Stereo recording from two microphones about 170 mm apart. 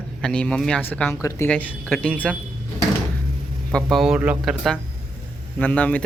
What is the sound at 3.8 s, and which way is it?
Speech, centre (ahead or behind).